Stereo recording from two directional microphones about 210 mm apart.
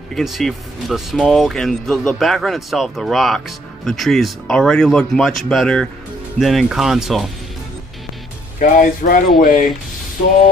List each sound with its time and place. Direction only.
0.1 s speech: centre (ahead or behind)
8.5 s speech: 40° left (ahead or behind)